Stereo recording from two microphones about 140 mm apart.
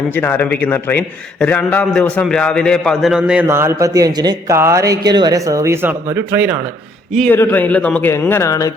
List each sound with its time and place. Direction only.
0.1 s a man's voice: 15° left (ahead or behind); by 3.4 s 5° right (ahead or behind)
3.4 s speech: 20° right (ahead or behind)
4.5 s speech: 20° right (ahead or behind)
7.1 s a man's voice: 5° left (ahead or behind); by 8.7 s 25° left (ahead or behind)